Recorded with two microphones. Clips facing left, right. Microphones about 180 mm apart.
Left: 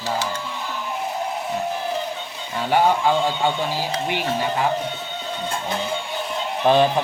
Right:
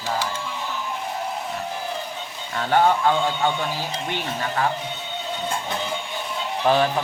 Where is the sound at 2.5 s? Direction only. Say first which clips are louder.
Even; 10° left (ahead or behind).